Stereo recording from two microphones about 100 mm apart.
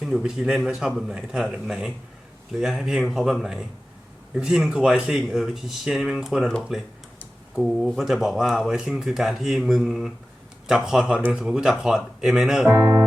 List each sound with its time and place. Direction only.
0.0 s speech: 5° right (ahead or behind)
12.7 s speech: 35° right (ahead or behind)